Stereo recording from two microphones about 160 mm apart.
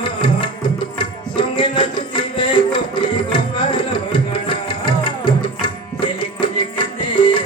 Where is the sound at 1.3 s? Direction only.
30° left (ahead or behind).